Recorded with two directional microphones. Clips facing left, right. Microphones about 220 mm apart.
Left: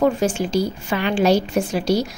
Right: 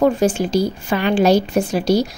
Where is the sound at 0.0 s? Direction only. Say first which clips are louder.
Right 3 dB; 35° right (ahead or behind).